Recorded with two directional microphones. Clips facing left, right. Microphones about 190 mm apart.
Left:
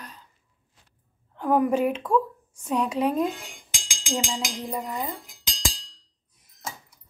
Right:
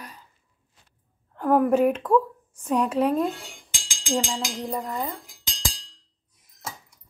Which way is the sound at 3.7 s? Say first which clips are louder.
Right 3 dB; 20° right (ahead or behind).